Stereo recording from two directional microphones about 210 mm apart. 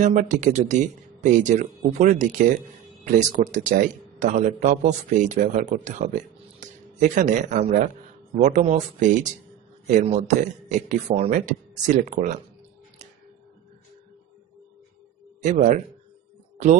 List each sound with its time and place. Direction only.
0.0 s a man's voice: 35° right (ahead or behind)
15.4 s a man's voice: 35° right (ahead or behind)